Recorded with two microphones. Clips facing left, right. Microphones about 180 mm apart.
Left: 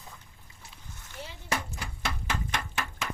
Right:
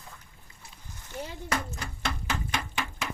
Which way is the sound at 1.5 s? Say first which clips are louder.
Even; 5° left (ahead or behind).